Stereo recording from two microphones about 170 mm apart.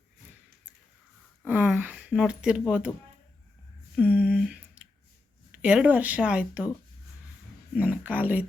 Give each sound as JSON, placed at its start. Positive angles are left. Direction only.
{"t": 1.5, "sound": "speech", "side_deg": -10}
{"t": 3.9, "sound": "a sound", "side_deg": -5}
{"t": 5.5, "sound": "speech", "side_deg": -5}
{"t": 7.8, "sound": "speech", "side_deg": -10}